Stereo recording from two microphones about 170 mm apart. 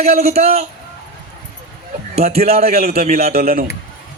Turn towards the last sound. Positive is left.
turn(degrees=-60)  # may be behind; listen again after turning